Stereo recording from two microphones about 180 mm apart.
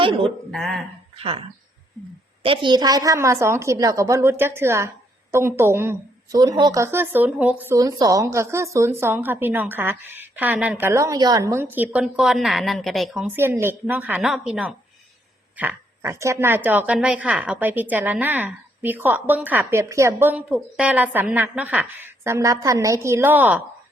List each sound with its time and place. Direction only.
0.0 s speech: 30° right (ahead or behind)
0.5 s speech: centre (ahead or behind)
1.1 s speech: 30° right (ahead or behind); by 7.8 s 10° right (ahead or behind)
7.8 s speech: 20° right (ahead or behind); by 13.3 s centre (ahead or behind)
13.3 s speech: 10° right (ahead or behind)